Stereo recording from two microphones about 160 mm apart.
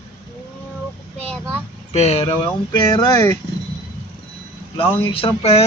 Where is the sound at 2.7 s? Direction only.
25° left (ahead or behind).